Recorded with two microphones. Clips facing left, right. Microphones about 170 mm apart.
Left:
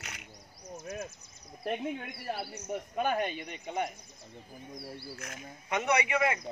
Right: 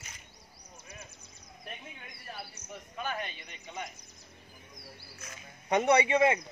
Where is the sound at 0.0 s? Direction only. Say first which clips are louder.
Left 6 dB; 75° left (ahead or behind).